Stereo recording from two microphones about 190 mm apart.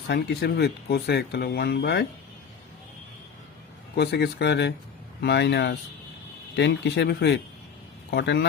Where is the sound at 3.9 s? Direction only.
60° left (ahead or behind).